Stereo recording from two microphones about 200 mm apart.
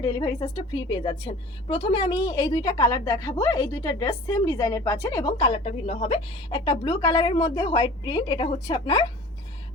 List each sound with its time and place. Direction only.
0.0 s a woman's voice: 20° left (ahead or behind)